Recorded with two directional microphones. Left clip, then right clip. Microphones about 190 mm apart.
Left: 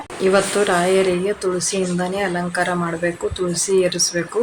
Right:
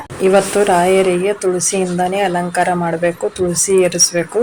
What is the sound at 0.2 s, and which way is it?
Speech, 20° right (ahead or behind).